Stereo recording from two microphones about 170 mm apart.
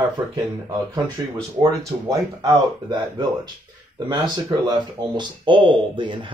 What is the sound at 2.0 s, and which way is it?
Speech, 20° right (ahead or behind).